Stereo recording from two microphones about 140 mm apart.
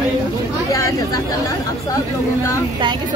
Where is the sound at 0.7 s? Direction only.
20° left (ahead or behind).